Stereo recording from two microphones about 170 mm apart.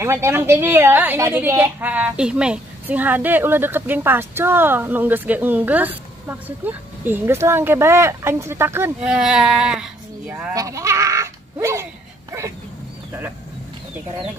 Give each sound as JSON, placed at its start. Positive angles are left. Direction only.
{"t": 0.0, "sound": "a woman's voice", "side_deg": -15}